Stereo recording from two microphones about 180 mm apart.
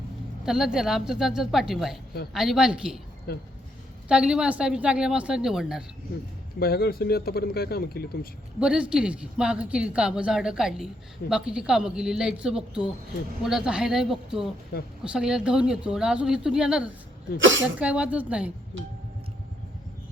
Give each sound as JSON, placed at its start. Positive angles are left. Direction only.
{"t": 0.4, "sound": "a woman's voice", "side_deg": -5}
{"t": 3.3, "sound": "speech", "side_deg": 60}
{"t": 4.1, "sound": "a woman's voice", "side_deg": -5}
{"t": 6.6, "sound": "speech", "side_deg": 60}
{"t": 8.6, "sound": "a woman's voice", "side_deg": -5}
{"t": 17.4, "sound": "a woman's voice", "side_deg": -90}
{"t": 17.7, "sound": "a woman's voice", "side_deg": -5}